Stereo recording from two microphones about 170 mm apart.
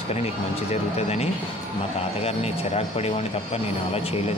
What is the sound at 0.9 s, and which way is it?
Speech, 40° left (ahead or behind).